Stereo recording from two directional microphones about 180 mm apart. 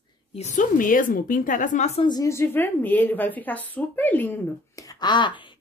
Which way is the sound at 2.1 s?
15° left (ahead or behind).